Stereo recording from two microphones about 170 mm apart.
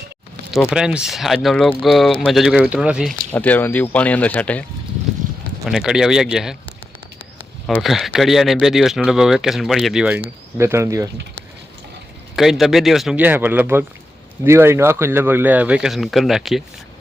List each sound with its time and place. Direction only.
0.7 s speech: 5° right (ahead or behind)
3.3 s speech: 10° left (ahead or behind)
5.6 s speech: 5° right (ahead or behind)
7.8 s speech: centre (ahead or behind)
10.6 s speech: 15° right (ahead or behind)
12.4 s speech: centre (ahead or behind)